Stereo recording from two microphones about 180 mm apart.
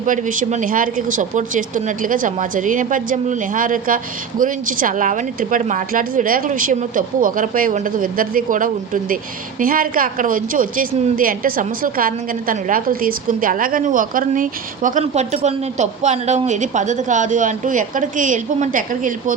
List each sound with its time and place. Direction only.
0.0 s a woman's voice: 45° right (ahead or behind)